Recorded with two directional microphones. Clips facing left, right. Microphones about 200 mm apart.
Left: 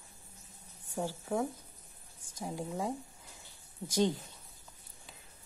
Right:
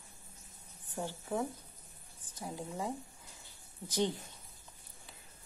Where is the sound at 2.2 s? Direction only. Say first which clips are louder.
Left 3 dB; 10° left (ahead or behind).